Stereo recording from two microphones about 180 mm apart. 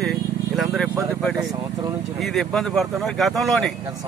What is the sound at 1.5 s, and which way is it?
Speech, 20° right (ahead or behind).